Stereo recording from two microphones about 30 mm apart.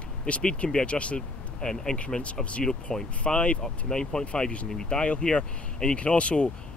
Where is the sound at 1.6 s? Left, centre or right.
Left.